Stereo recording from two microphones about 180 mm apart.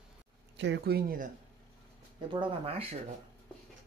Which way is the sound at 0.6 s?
70° right (ahead or behind).